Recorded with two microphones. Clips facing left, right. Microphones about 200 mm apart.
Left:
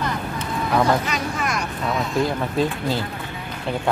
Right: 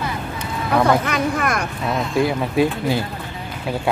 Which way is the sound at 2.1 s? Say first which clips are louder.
Right 4 dB; 10° right (ahead or behind).